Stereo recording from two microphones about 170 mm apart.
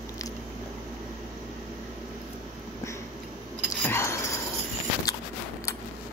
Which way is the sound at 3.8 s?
15° left (ahead or behind).